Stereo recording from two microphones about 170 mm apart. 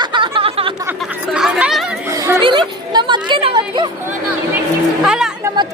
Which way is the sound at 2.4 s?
30° right (ahead or behind).